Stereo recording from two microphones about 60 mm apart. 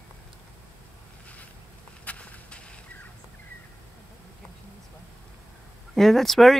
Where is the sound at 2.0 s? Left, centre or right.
Left.